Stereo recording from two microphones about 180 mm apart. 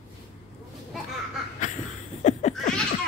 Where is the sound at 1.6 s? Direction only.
45° left (ahead or behind).